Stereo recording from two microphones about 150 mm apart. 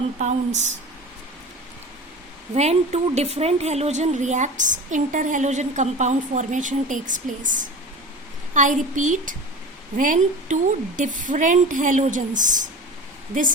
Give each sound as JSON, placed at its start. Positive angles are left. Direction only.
{"t": 0.2, "sound": "a woman's voice", "side_deg": -50}
{"t": 2.6, "sound": "a woman's voice", "side_deg": -45}